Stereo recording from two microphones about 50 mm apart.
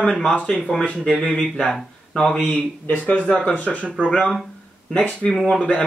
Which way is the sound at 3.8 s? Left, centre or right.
Right.